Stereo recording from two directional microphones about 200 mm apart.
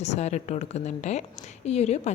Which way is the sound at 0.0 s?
35° left (ahead or behind).